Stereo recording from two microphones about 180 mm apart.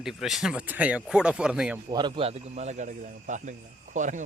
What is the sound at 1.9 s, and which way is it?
A man's voice, 25° right (ahead or behind).